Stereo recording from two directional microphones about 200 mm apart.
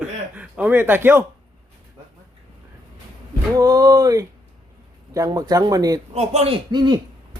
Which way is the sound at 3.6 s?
15° right (ahead or behind).